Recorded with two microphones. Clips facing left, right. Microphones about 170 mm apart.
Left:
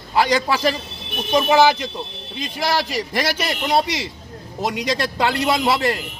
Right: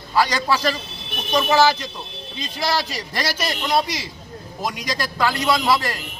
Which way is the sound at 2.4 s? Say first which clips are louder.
Left 2 dB; 50° left (ahead or behind).